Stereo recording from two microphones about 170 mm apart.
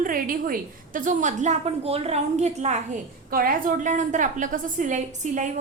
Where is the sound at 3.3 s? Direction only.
55° right (ahead or behind).